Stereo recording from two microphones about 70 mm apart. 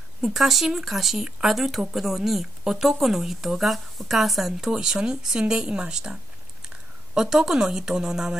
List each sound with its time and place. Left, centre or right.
0.2 s speech: centre
7.2 s speech: centre